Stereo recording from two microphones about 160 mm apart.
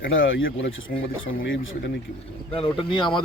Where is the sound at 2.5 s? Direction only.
35° left (ahead or behind).